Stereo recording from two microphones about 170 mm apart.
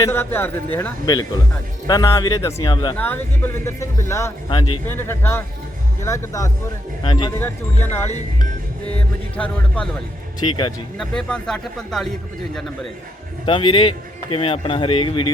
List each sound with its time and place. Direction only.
0.0 s speech: 15° left (ahead or behind)
1.0 s speech: 25° left (ahead or behind)
4.4 s speech: 30° left (ahead or behind)
4.9 s speech: 15° left (ahead or behind)
7.3 s speech: 15° left (ahead or behind)
10.4 s speech: 25° left (ahead or behind)
10.9 s speech: 5° left (ahead or behind)
13.4 s speech: 30° left (ahead or behind)